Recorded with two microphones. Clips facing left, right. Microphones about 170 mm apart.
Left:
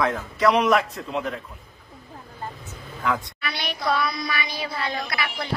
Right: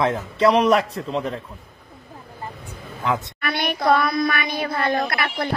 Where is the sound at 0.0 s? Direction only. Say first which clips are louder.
Right 3 dB; 25° right (ahead or behind).